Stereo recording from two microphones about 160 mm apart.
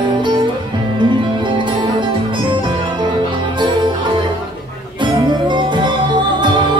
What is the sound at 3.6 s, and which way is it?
Music, 30° right (ahead or behind).